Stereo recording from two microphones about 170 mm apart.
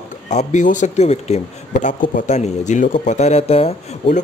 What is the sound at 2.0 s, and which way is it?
Speech, 50° left (ahead or behind).